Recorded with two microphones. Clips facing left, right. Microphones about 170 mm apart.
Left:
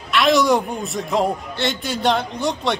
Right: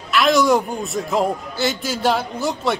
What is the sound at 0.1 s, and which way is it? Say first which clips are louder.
A man's voice: even; centre (ahead or behind).